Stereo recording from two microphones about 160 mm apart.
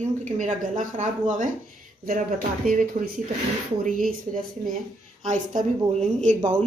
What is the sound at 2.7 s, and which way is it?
A woman's voice, 55° right (ahead or behind).